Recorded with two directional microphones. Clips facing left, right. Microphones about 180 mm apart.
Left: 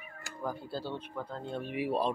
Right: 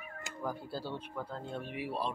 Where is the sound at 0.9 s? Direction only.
15° left (ahead or behind).